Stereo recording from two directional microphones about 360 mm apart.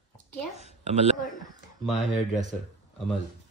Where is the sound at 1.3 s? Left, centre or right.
Centre.